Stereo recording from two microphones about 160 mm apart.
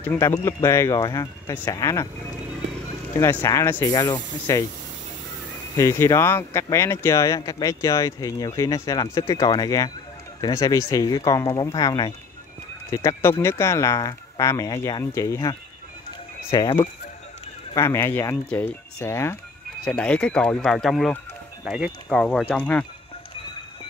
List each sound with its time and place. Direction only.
0.0 s speech: 15° left (ahead or behind)
3.2 s speech: 15° left (ahead or behind)
5.8 s speech: 20° left (ahead or behind)
12.9 s speech: 15° left (ahead or behind)
16.5 s speech: 30° left (ahead or behind)
17.7 s speech: 20° left (ahead or behind)
18.3 s speech: 10° left (ahead or behind)
22.1 s speech: 5° left (ahead or behind)